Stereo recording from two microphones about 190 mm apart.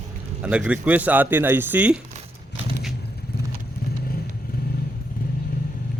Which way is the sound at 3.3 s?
55° left (ahead or behind).